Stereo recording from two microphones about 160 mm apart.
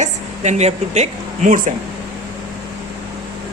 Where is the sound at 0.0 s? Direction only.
45° right (ahead or behind).